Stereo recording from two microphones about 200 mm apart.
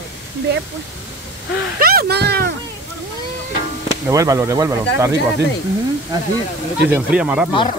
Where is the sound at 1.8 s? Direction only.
50° right (ahead or behind).